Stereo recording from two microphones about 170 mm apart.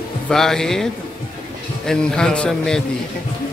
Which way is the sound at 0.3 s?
5° left (ahead or behind).